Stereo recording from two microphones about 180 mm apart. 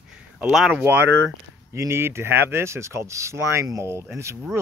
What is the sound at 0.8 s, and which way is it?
Speech, 10° right (ahead or behind).